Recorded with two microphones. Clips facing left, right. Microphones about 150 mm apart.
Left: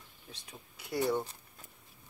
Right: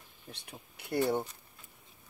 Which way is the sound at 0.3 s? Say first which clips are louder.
Right 3 dB; 65° right (ahead or behind).